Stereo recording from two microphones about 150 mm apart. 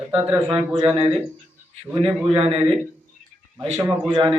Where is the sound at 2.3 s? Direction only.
35° right (ahead or behind).